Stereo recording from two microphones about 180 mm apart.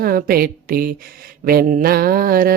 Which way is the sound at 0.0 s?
55° right (ahead or behind).